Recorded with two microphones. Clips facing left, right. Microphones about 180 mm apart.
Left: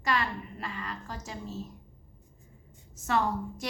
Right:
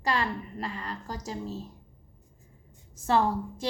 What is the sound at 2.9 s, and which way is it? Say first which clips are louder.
Speech: right 3 dB; 30° right (ahead or behind).